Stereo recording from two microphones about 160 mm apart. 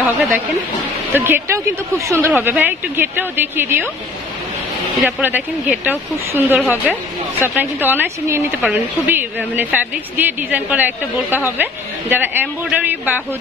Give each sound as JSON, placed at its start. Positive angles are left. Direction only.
{"t": 1.1, "sound": "a woman's voice", "side_deg": -15}
{"t": 5.0, "sound": "a woman's voice", "side_deg": -10}
{"t": 6.6, "sound": "a woman's voice", "side_deg": 10}
{"t": 7.3, "sound": "a woman's voice", "side_deg": -10}